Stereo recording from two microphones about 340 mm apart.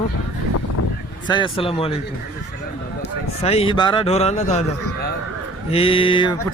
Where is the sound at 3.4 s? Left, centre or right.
Centre.